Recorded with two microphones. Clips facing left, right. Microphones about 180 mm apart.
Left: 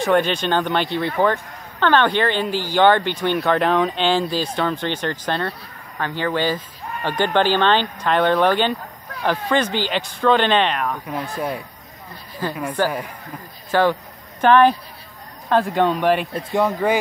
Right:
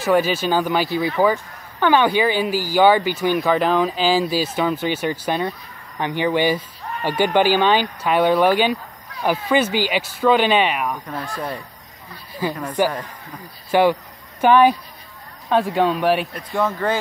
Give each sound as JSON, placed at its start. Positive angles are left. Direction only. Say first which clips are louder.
{"t": 0.0, "sound": "speech", "louder": "even", "side_deg": -5}
{"t": 11.1, "sound": "speech", "louder": "left 2 dB", "side_deg": 10}
{"t": 12.4, "sound": "speech", "louder": "right 1 dB", "side_deg": -10}
{"t": 16.3, "sound": "speech", "louder": "left 2 dB", "side_deg": 15}